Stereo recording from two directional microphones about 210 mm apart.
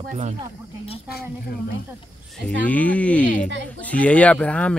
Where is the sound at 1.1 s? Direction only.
50° left (ahead or behind).